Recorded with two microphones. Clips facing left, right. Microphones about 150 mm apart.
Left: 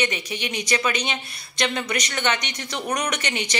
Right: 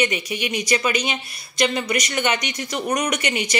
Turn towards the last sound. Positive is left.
turn(degrees=-10)  # may be behind; listen again after turning